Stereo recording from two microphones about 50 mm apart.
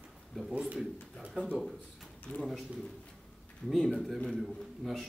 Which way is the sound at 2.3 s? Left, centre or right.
Left.